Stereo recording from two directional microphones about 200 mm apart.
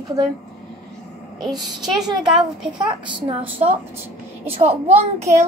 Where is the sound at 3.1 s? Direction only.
25° right (ahead or behind).